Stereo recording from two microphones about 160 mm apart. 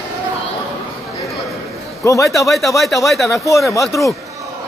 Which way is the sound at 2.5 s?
Centre (ahead or behind).